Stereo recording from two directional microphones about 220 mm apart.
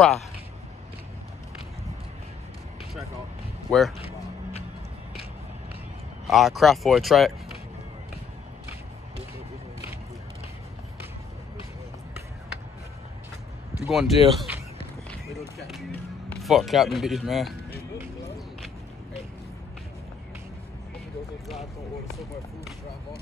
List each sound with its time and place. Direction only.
3.7 s speech: 5° left (ahead or behind)
4.0 s a sound: 25° left (ahead or behind)
6.2 s speech: centre (ahead or behind)
13.8 s speech: centre (ahead or behind)
15.6 s speech: centre (ahead or behind)